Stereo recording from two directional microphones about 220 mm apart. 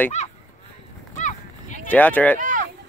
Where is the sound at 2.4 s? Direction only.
35° right (ahead or behind).